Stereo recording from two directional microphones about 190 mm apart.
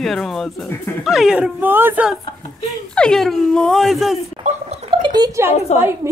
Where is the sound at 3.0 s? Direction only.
5° left (ahead or behind).